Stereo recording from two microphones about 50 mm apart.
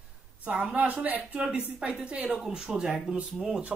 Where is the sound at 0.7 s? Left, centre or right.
Right.